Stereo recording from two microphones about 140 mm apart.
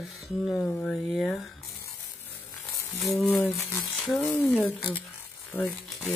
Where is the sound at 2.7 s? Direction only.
20° left (ahead or behind).